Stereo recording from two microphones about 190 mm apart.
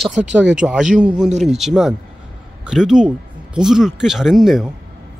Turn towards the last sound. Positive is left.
turn(degrees=0)  # may be behind; listen again after turning